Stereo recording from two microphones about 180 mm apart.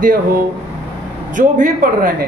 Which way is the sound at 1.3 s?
45° right (ahead or behind).